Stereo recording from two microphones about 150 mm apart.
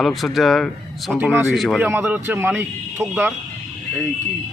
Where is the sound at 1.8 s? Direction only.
15° right (ahead or behind).